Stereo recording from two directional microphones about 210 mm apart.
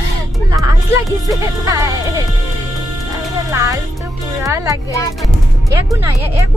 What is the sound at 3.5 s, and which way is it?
Speech, 15° right (ahead or behind).